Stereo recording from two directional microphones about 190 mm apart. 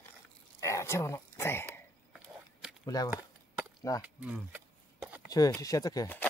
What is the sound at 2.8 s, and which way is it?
Speech, 20° left (ahead or behind).